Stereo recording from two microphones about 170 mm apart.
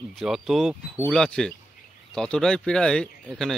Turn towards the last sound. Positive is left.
turn(degrees=5)  # may be behind; listen again after turning